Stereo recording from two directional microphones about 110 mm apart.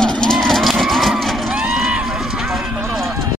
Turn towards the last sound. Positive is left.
turn(degrees=0)  # may be behind; listen again after turning